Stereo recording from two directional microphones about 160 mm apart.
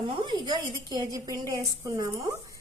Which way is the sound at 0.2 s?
30° right (ahead or behind).